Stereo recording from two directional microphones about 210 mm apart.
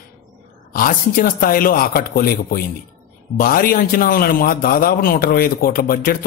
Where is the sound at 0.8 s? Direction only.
40° left (ahead or behind).